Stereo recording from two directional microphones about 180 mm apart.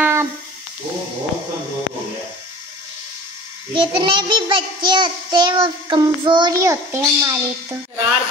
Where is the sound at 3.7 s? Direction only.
25° right (ahead or behind).